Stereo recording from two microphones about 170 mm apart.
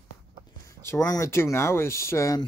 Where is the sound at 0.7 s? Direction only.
15° left (ahead or behind).